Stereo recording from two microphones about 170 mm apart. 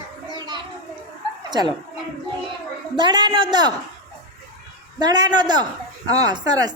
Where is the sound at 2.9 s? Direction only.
25° right (ahead or behind).